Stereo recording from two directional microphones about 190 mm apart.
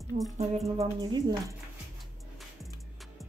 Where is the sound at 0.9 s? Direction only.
20° right (ahead or behind).